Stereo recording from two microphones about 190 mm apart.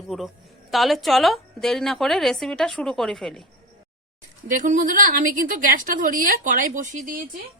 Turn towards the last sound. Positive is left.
turn(degrees=-45)  # may be behind; listen again after turning